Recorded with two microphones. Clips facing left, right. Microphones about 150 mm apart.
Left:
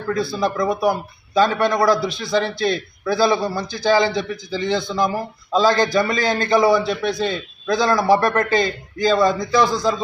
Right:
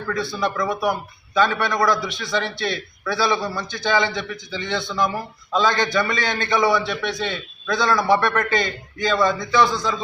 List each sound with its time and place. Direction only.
0.3 s speech: 30° left (ahead or behind)